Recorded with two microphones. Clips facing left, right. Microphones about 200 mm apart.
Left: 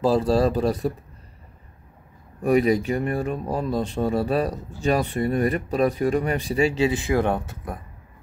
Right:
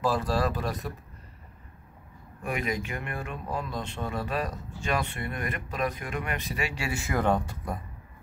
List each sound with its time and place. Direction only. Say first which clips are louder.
0.2 s speech: left 8 dB; 30° left (ahead or behind)
2.4 s speech: left 12 dB; 35° left (ahead or behind); by 7.4 s 15° left (ahead or behind)